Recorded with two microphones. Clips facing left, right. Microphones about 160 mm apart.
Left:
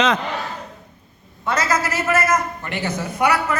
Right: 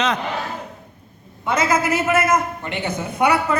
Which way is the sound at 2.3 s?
20° right (ahead or behind).